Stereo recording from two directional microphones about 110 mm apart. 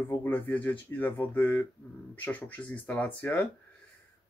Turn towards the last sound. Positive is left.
turn(degrees=15)  # may be behind; listen again after turning